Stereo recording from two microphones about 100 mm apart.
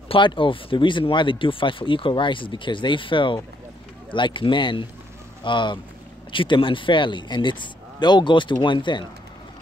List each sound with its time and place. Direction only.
0.1 s speech: 55° left (ahead or behind)